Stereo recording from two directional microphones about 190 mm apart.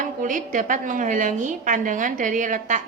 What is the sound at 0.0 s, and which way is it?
A woman's voice, 45° right (ahead or behind).